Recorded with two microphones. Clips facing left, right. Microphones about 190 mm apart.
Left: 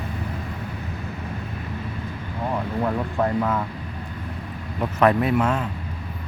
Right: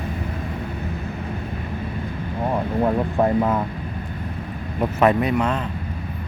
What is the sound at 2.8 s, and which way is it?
Speech, 25° right (ahead or behind).